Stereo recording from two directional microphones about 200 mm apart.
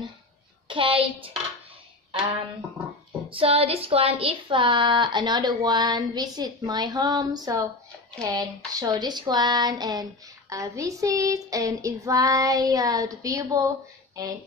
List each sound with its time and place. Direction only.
0.7 s speech: 25° right (ahead or behind)
3.3 s speech: 25° right (ahead or behind)
10.5 s child singing: 15° right (ahead or behind)